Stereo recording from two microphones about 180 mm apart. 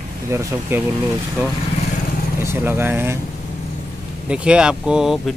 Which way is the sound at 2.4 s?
10° right (ahead or behind).